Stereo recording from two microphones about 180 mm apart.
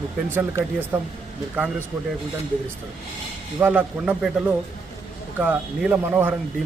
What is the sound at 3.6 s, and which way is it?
Speech, 10° right (ahead or behind).